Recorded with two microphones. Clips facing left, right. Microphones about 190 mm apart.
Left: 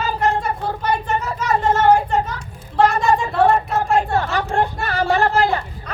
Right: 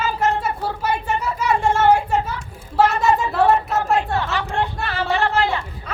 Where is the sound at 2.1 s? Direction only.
10° right (ahead or behind).